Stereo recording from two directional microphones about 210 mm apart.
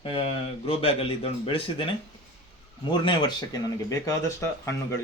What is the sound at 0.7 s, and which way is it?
Speech, 25° left (ahead or behind).